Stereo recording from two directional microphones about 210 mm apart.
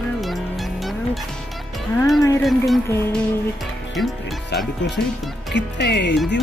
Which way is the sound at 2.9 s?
10° left (ahead or behind).